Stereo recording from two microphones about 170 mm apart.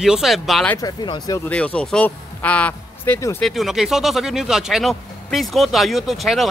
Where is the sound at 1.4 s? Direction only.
5° left (ahead or behind).